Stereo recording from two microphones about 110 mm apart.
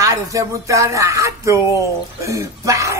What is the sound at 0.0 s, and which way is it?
Speech, 30° right (ahead or behind).